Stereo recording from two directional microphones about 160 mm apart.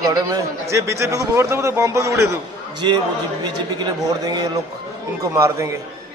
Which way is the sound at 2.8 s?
30° right (ahead or behind).